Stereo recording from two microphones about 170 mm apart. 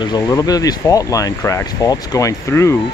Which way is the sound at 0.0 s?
20° left (ahead or behind).